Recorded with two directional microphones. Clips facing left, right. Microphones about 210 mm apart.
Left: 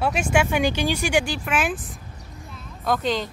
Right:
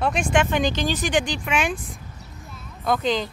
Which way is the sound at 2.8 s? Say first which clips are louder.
Right 1 dB; centre (ahead or behind).